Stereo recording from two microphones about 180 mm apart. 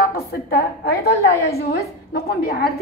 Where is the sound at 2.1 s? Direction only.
60° left (ahead or behind).